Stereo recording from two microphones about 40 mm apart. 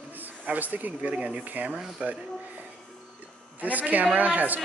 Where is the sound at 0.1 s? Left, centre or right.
Right.